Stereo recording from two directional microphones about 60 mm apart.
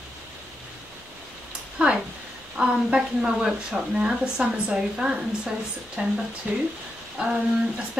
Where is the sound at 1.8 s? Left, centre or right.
Centre.